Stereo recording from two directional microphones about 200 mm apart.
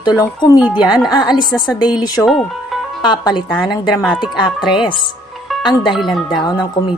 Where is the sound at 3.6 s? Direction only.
Centre (ahead or behind).